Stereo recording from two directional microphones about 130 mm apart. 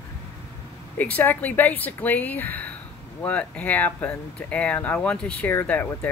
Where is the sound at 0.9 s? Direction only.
15° left (ahead or behind).